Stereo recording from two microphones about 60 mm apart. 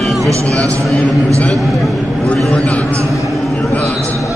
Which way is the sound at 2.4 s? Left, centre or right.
Centre.